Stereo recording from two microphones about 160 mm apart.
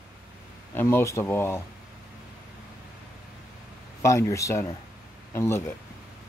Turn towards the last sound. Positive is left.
turn(degrees=15)  # may be behind; listen again after turning